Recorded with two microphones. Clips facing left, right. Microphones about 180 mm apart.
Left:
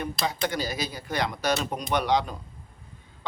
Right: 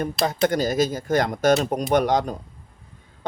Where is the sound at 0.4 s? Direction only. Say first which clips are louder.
Right 13 dB; 45° right (ahead or behind).